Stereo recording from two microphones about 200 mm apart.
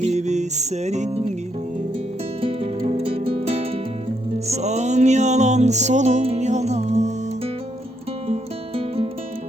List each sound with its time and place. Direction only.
0.0 s music: 35° right (ahead or behind)
2.4 s music: 30° right (ahead or behind)